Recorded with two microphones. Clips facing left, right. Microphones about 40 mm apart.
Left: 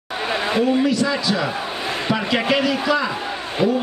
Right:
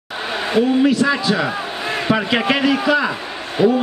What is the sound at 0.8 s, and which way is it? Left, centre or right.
A man's voice, right.